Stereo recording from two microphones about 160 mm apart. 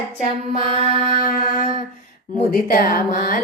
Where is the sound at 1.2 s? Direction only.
65° left (ahead or behind).